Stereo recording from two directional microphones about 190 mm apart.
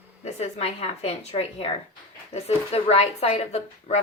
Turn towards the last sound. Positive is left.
turn(degrees=35)  # may be behind; listen again after turning